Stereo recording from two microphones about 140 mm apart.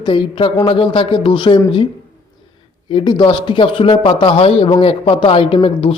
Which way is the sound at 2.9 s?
35° left (ahead or behind).